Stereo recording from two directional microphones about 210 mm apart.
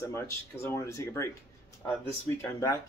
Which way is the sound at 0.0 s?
15° left (ahead or behind).